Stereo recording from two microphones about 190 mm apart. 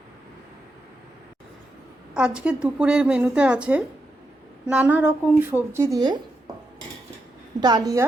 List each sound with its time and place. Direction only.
2.1 s a woman's voice: 5° right (ahead or behind)
7.6 s a woman's voice: 20° right (ahead or behind)